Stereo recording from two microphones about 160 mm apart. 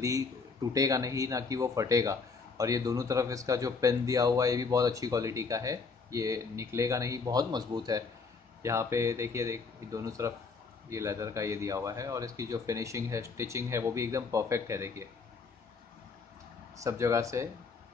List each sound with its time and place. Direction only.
0.7 s speech: 20° right (ahead or behind)
16.7 s speech: 20° right (ahead or behind)